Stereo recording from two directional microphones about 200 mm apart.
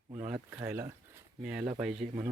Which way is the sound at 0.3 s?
10° right (ahead or behind).